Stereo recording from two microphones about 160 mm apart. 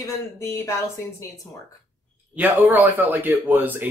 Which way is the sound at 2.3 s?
10° right (ahead or behind).